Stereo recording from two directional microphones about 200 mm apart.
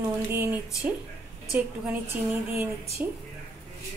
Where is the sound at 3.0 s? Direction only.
10° right (ahead or behind).